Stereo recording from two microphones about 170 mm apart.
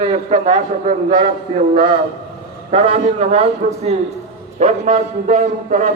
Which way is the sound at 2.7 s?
35° right (ahead or behind).